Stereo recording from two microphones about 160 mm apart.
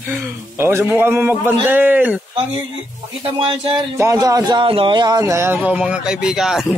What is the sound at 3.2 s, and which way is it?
Speech, 35° right (ahead or behind).